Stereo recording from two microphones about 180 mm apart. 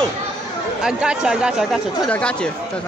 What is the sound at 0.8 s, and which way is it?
Speech, 5° right (ahead or behind).